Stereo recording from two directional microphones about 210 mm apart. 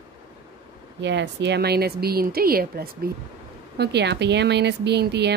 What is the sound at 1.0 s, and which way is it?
Speech, 55° right (ahead or behind).